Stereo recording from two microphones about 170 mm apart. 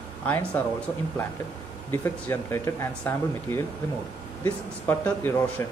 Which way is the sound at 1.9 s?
15° left (ahead or behind).